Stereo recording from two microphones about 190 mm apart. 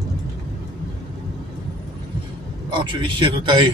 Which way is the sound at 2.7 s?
25° right (ahead or behind).